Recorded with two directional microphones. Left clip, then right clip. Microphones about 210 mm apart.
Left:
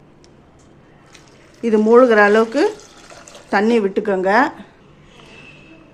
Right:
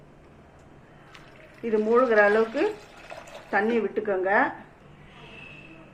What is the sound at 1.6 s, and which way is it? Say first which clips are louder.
A man's voice: left 10 dB; 55° left (ahead or behind).